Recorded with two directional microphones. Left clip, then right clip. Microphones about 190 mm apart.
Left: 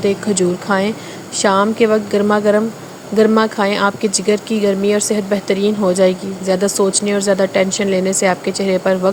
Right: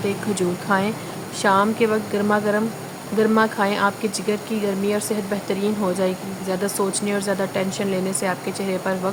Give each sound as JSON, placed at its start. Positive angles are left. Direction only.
{"t": 0.0, "sound": "speech", "side_deg": 25}